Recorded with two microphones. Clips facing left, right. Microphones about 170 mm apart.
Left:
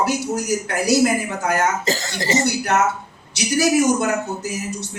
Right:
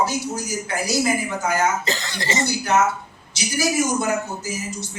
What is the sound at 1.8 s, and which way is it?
Speech, 45° left (ahead or behind).